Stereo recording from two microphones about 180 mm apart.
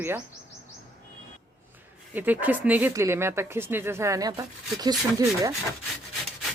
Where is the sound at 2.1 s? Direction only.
10° right (ahead or behind).